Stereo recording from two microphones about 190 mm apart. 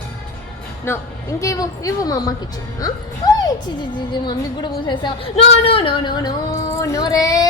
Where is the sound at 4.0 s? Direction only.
25° left (ahead or behind).